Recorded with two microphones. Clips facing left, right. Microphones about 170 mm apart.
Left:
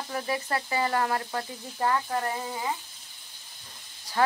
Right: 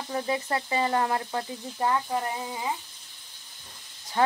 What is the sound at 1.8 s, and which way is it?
Speech, 10° right (ahead or behind).